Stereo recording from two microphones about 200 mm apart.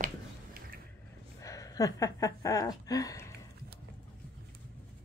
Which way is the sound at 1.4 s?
15° left (ahead or behind).